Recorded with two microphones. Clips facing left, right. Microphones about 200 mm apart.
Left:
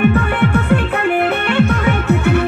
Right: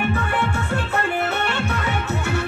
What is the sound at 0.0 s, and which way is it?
Music, 60° left (ahead or behind).